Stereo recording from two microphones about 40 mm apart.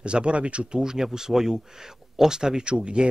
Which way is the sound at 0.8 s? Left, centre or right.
Centre.